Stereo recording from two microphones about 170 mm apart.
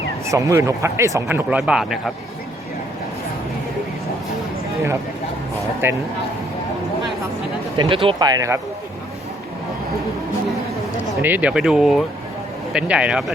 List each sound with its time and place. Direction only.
0.3 s speech: 20° right (ahead or behind); by 2.1 s centre (ahead or behind)
5.8 s speech: 15° right (ahead or behind)
7.8 s speech: 30° right (ahead or behind)
11.2 s speech: 10° right (ahead or behind)